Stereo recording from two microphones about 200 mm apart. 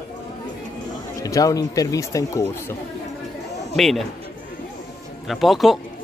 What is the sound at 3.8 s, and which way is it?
Speech, centre (ahead or behind).